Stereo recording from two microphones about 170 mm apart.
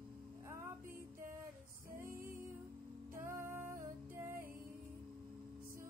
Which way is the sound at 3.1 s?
15° right (ahead or behind).